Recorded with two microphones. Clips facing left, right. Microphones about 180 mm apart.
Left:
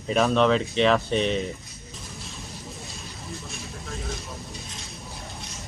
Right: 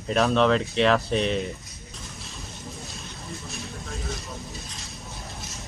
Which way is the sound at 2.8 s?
Centre (ahead or behind).